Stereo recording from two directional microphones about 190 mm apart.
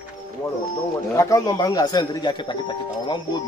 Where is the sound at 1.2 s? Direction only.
15° left (ahead or behind).